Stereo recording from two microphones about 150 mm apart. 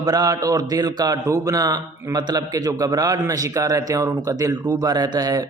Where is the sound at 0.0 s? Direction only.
25° right (ahead or behind).